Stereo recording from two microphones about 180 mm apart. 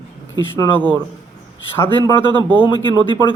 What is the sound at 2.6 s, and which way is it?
Speech, 25° left (ahead or behind).